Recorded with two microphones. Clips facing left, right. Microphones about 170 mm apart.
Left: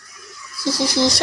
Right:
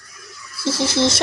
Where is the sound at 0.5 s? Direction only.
25° right (ahead or behind).